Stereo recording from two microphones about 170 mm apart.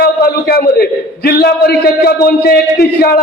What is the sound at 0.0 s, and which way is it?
A man's voice, 60° left (ahead or behind).